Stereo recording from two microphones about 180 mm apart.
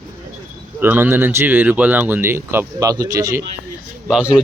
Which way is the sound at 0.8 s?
10° right (ahead or behind).